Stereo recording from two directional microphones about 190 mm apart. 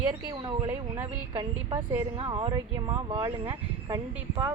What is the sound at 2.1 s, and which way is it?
Speech, 25° right (ahead or behind).